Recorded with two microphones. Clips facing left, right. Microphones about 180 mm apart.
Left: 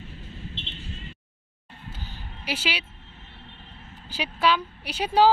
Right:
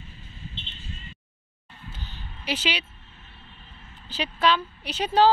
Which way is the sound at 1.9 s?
10° left (ahead or behind).